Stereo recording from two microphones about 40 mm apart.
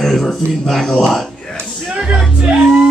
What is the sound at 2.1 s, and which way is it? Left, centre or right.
Music, right.